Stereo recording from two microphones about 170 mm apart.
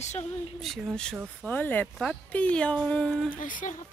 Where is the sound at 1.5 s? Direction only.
10° left (ahead or behind).